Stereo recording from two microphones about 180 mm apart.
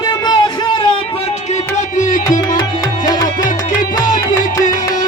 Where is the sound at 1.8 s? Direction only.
45° left (ahead or behind).